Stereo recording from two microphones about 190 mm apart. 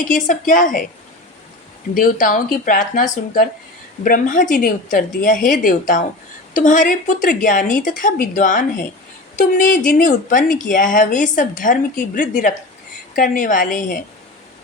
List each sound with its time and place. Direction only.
0.1 s a woman's voice: 40° left (ahead or behind)
2.0 s a woman's voice: 45° left (ahead or behind)